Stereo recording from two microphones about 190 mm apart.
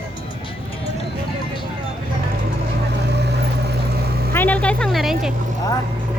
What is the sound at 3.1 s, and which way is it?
Vehicle, 60° right (ahead or behind).